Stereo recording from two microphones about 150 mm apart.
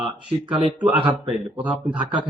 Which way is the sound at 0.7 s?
10° right (ahead or behind).